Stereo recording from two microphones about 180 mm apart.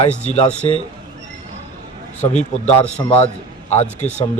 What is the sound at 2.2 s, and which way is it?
Speech, 40° left (ahead or behind).